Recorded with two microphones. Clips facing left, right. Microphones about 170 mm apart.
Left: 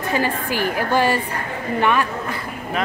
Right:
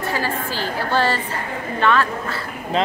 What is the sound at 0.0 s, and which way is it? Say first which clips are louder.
A woman's voice: left 2 dB; 20° left (ahead or behind).